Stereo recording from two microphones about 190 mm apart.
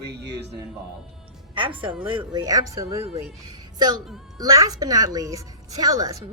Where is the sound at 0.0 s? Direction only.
60° right (ahead or behind).